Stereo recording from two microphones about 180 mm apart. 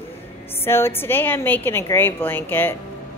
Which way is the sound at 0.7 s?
15° left (ahead or behind).